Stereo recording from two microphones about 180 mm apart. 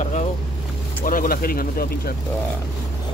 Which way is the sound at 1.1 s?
50° left (ahead or behind).